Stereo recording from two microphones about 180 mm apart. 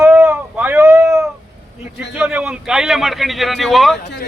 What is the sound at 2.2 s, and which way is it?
A man's voice, 5° right (ahead or behind).